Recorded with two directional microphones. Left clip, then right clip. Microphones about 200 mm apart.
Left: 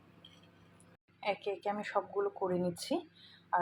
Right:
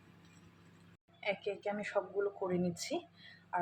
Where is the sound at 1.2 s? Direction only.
10° left (ahead or behind).